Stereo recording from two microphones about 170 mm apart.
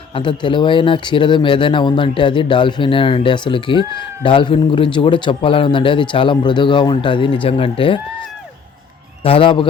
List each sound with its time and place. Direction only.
0.1 s speech: 30° left (ahead or behind)
9.2 s a man's voice: 30° left (ahead or behind)